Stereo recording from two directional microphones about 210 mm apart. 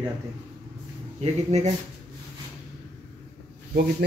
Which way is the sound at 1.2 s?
30° right (ahead or behind).